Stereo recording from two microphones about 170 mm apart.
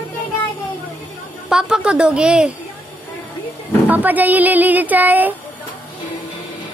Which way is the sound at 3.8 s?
10° right (ahead or behind).